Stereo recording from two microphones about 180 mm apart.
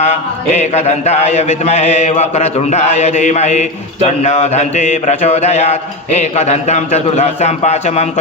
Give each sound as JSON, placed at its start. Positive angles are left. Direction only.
{"t": 0.0, "sound": "a man's voice", "side_deg": 40}